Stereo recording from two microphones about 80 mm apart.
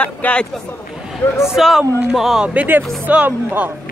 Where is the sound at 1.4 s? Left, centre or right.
Centre.